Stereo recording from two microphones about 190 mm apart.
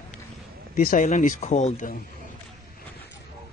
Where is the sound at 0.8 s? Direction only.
45° left (ahead or behind).